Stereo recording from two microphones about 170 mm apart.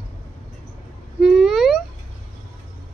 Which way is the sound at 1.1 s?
Centre (ahead or behind).